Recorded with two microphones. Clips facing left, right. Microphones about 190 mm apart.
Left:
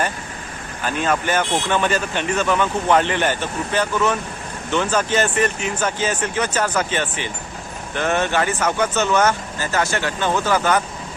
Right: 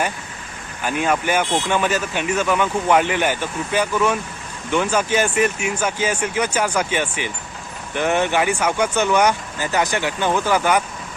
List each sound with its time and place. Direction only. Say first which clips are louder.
0.9 s speech: right 1 dB; 10° right (ahead or behind)